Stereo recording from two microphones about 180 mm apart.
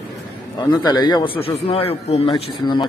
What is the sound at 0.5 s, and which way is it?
A man's voice, 25° left (ahead or behind).